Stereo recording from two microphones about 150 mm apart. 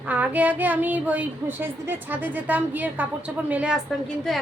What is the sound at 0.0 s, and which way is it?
Speech, 10° right (ahead or behind).